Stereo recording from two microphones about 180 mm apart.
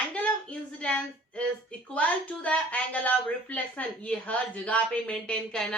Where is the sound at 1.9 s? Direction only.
10° left (ahead or behind).